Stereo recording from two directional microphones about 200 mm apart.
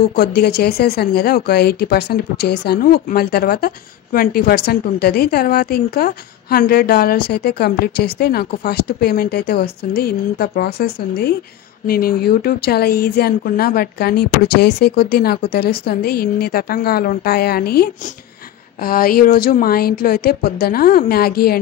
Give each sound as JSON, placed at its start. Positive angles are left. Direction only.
{"t": 0.1, "sound": "speech", "side_deg": 50}